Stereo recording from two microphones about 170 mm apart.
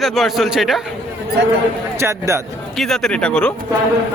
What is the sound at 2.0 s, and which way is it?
Speech, 15° right (ahead or behind).